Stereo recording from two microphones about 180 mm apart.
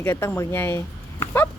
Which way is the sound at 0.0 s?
15° left (ahead or behind).